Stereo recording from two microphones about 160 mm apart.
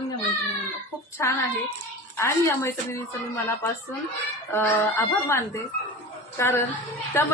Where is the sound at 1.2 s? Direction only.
15° left (ahead or behind).